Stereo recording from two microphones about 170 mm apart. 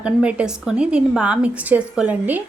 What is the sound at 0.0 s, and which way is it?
Speech, 5° right (ahead or behind).